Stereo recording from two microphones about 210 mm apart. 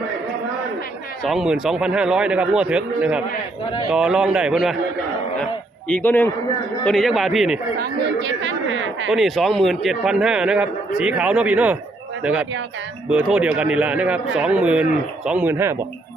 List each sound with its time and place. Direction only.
1.2 s speech: centre (ahead or behind)
5.9 s a man's voice: 10° left (ahead or behind)
7.8 s speech: 60° right (ahead or behind)
9.0 s speech: centre (ahead or behind)